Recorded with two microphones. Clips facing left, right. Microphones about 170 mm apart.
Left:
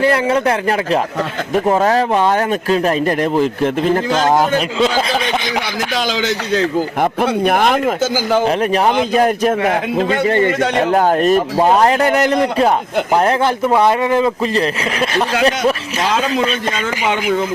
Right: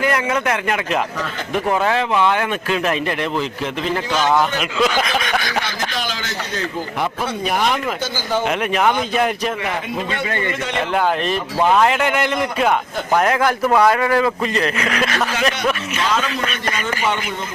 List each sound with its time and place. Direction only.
0.0 s speech: 30° left (ahead or behind); by 4.6 s 45° left (ahead or behind)
4.8 s speech: 30° left (ahead or behind)
7.0 s speech: 55° left (ahead or behind)
8.4 s speech: 35° left (ahead or behind); by 14.3 s 20° left (ahead or behind)
14.4 s speech: 35° left (ahead or behind)